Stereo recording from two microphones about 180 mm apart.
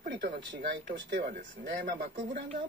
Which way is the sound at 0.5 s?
75° right (ahead or behind).